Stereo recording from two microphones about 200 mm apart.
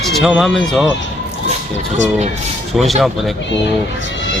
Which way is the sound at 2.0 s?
35° right (ahead or behind).